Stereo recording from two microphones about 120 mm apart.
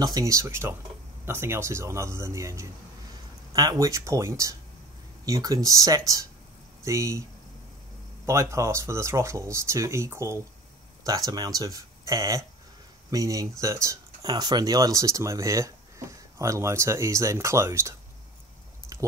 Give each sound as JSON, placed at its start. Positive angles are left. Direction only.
{"t": 0.0, "sound": "speech", "side_deg": -30}
{"t": 8.3, "sound": "speech", "side_deg": -25}
{"t": 18.9, "sound": "a sound", "side_deg": -25}